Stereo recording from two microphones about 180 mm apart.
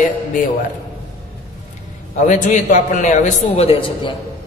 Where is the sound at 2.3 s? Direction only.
45° left (ahead or behind).